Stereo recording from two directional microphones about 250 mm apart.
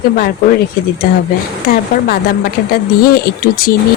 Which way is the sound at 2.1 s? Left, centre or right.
Left.